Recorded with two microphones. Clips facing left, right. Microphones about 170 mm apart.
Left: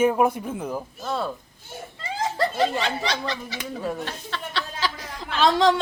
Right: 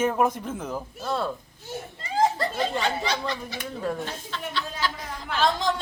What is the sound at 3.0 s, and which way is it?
A woman's voice, 85° left.